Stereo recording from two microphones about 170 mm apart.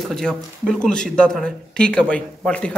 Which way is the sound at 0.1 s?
5° left (ahead or behind).